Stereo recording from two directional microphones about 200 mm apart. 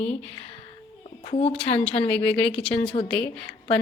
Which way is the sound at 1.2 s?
30° left (ahead or behind).